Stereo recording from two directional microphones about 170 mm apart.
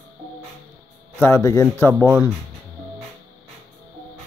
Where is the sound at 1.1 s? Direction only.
15° left (ahead or behind).